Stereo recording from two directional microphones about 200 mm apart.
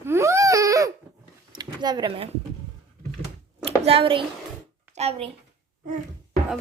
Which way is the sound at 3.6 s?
30° right (ahead or behind).